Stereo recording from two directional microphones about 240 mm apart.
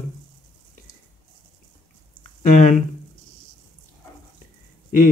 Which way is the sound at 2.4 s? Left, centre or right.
Left.